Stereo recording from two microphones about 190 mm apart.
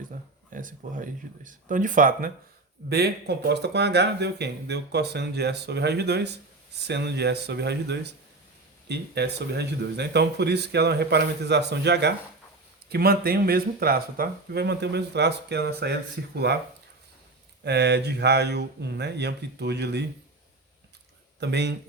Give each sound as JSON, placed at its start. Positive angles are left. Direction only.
{"t": 0.5, "sound": "speech", "side_deg": -45}
{"t": 2.9, "sound": "speech", "side_deg": -60}
{"t": 17.6, "sound": "speech", "side_deg": -60}
{"t": 21.4, "sound": "speech", "side_deg": -65}